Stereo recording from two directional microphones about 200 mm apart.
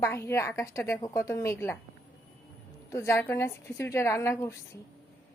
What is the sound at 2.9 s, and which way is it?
A woman's voice, 15° left (ahead or behind).